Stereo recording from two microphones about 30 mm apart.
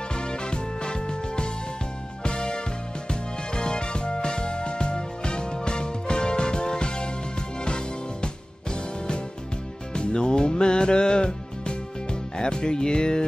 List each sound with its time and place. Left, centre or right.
0.1 s music: left
9.9 s music: left